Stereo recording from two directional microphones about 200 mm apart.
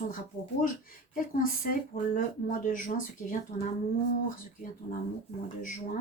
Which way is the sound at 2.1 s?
40° left (ahead or behind).